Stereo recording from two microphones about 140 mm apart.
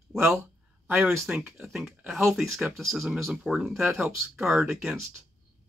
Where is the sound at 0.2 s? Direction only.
15° right (ahead or behind).